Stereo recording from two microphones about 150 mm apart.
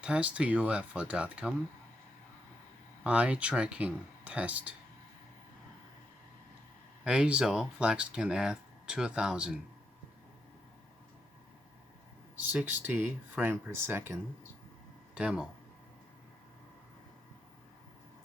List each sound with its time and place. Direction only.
0.0 s speech: 10° right (ahead or behind)
3.0 s speech: 5° right (ahead or behind)
7.0 s speech: 5° right (ahead or behind)
12.4 s speech: 10° right (ahead or behind)